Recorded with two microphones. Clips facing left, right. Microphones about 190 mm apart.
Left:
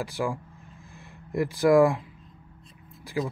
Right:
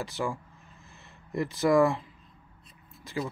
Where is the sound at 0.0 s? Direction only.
15° left (ahead or behind).